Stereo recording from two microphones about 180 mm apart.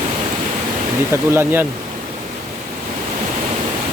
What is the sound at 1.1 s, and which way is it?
Speech, 15° right (ahead or behind).